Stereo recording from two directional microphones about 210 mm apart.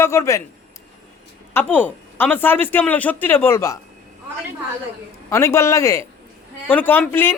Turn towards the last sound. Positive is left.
turn(degrees=10)  # may be behind; listen again after turning